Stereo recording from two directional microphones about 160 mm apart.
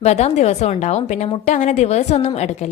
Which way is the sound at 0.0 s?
40° left (ahead or behind).